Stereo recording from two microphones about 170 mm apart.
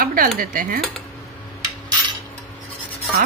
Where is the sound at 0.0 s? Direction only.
55° right (ahead or behind).